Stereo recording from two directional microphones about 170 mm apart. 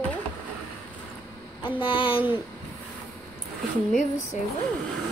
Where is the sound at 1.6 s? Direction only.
30° left (ahead or behind).